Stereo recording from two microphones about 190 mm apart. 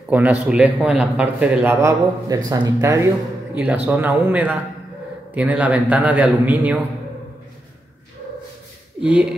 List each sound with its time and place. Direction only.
0.1 s a man's voice: 10° right (ahead or behind)
9.0 s speech: 5° right (ahead or behind)